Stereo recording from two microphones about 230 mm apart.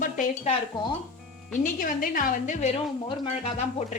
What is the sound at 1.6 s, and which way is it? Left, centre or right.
Speech, left.